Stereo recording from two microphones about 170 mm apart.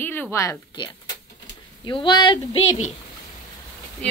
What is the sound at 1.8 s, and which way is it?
A woman's voice, 25° left (ahead or behind).